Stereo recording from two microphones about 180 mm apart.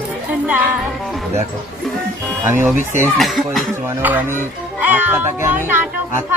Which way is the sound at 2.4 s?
10° right (ahead or behind).